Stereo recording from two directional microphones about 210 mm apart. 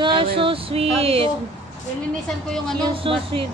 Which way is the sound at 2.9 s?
25° right (ahead or behind).